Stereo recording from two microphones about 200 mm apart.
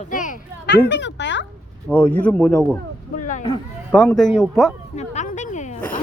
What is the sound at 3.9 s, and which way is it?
Speech, 5° left (ahead or behind).